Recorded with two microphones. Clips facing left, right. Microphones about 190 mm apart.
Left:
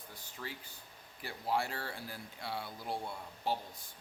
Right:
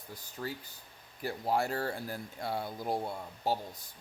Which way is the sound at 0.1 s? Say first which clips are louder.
Right 7 dB; 40° right (ahead or behind).